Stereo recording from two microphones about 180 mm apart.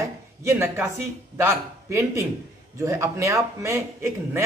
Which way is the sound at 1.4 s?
15° right (ahead or behind).